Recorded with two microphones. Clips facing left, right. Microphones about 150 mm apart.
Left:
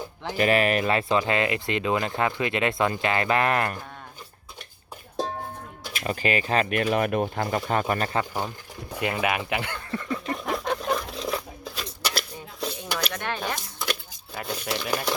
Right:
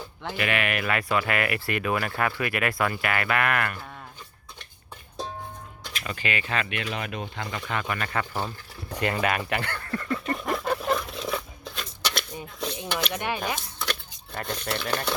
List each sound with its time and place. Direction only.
0.3 s speech: 35° left (ahead or behind)
6.1 s speech: 40° left (ahead or behind)
8.2 s speech: 15° left (ahead or behind)
10.2 s a sound: centre (ahead or behind)
13.1 s speech: 15° right (ahead or behind)
13.4 s a sound: centre (ahead or behind)
14.3 s speech: 5° left (ahead or behind)